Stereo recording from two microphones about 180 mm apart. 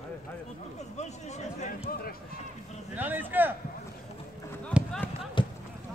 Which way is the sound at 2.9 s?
10° right (ahead or behind).